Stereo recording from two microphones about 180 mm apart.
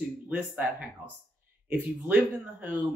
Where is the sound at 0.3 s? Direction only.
10° right (ahead or behind).